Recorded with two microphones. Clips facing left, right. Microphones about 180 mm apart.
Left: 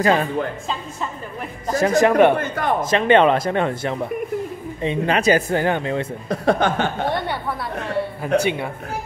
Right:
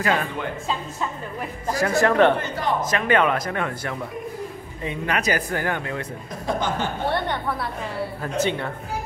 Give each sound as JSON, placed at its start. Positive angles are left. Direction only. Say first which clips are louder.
{"t": 0.0, "sound": "speech", "louder": "left 5 dB", "side_deg": 30}
{"t": 1.7, "sound": "speech", "louder": "left 4 dB", "side_deg": 20}
{"t": 2.8, "sound": "speech", "louder": "left 7 dB", "side_deg": 25}
{"t": 6.2, "sound": "speech", "louder": "left 7 dB", "side_deg": 70}
{"t": 7.4, "sound": "a woman's voice", "louder": "left 2 dB", "side_deg": 0}
{"t": 8.4, "sound": "speech", "louder": "left 2 dB", "side_deg": 10}